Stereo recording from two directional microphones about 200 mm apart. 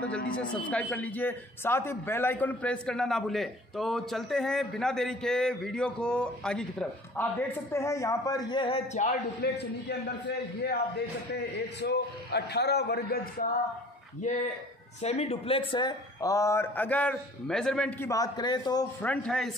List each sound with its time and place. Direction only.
0.4 s a man's voice: 5° left (ahead or behind); by 9.1 s 35° left (ahead or behind)
9.4 s a man's voice: 55° left (ahead or behind)
11.8 s a man's voice: 55° left (ahead or behind)
15.0 s a man's voice: 30° left (ahead or behind)
19.0 s a man's voice: 5° left (ahead or behind)